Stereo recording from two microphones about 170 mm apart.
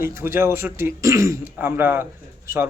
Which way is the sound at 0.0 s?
15° right (ahead or behind).